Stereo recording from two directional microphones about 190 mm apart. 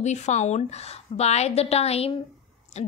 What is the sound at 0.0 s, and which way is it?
A woman's voice, 35° left (ahead or behind).